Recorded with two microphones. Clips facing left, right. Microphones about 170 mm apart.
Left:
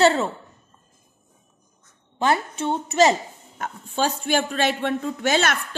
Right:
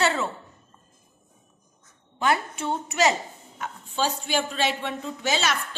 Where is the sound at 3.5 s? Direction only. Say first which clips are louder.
Left 4 dB; 45° left (ahead or behind).